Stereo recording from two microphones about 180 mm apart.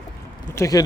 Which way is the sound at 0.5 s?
20° left (ahead or behind).